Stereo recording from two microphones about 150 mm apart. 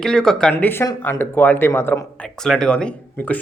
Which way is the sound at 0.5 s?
15° left (ahead or behind).